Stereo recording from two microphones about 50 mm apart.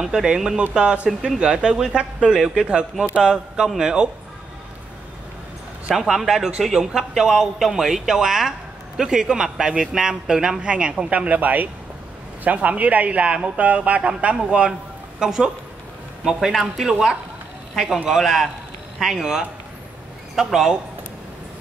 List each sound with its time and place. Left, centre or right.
0.0 s speech: centre
5.9 s a man's voice: centre; by 14.7 s right
15.1 s speech: centre